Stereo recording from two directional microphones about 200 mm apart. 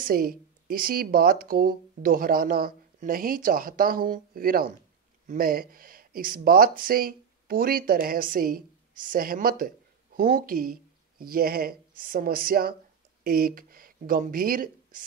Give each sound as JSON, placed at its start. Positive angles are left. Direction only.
{"t": 0.0, "sound": "speech", "side_deg": -45}